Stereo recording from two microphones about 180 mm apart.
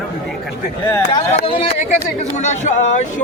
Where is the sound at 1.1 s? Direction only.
30° left (ahead or behind).